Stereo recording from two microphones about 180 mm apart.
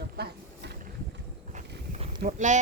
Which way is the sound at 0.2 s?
65° right (ahead or behind).